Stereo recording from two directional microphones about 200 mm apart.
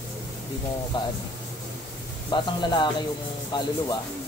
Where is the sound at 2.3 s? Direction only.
20° left (ahead or behind).